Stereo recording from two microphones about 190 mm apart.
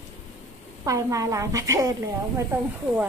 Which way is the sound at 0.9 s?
15° right (ahead or behind).